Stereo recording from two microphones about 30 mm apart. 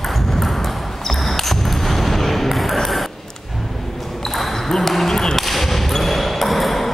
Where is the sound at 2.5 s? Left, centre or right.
Centre.